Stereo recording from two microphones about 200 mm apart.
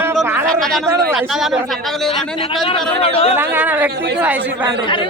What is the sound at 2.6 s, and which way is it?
Speech, 30° left (ahead or behind).